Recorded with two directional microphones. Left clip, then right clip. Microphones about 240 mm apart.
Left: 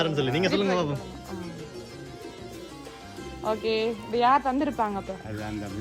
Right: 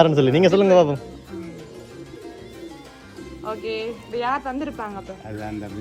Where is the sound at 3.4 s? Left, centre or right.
Left.